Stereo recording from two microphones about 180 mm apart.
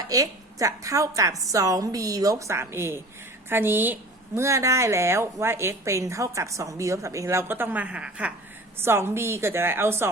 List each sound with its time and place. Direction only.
0.1 s a woman's voice: 20° right (ahead or behind)